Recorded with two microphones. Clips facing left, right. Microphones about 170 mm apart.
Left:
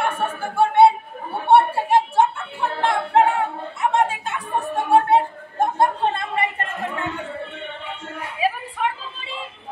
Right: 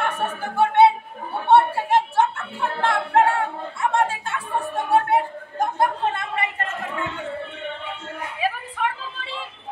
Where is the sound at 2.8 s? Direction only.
15° left (ahead or behind).